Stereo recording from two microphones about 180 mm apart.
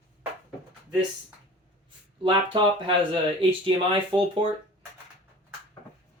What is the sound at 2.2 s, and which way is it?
Speech, 30° right (ahead or behind).